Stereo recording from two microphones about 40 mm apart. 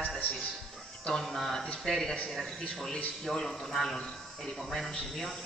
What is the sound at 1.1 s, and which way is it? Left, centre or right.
A man's voice, centre.